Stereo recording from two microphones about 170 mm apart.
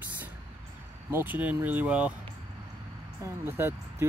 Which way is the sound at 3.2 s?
15° right (ahead or behind).